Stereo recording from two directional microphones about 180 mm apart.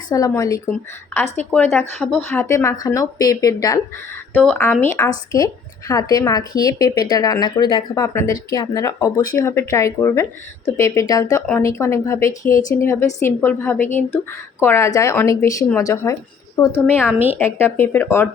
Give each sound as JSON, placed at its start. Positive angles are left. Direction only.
{"t": 0.1, "sound": "a woman's voice", "side_deg": 20}
{"t": 4.4, "sound": "a woman's voice", "side_deg": 5}
{"t": 17.1, "sound": "a woman's voice", "side_deg": -10}
{"t": 17.3, "sound": "speech", "side_deg": 10}